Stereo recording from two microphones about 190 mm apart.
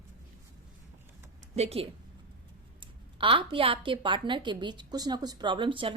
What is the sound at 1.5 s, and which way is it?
A woman's voice, 30° right (ahead or behind).